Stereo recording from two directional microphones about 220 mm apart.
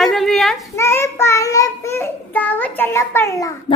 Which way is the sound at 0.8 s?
10° left (ahead or behind).